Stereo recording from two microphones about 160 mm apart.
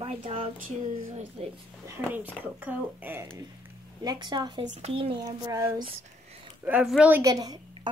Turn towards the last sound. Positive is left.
turn(degrees=-25)  # may be behind; listen again after turning